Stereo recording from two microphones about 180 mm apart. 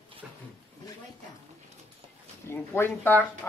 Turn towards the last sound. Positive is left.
turn(degrees=10)  # may be behind; listen again after turning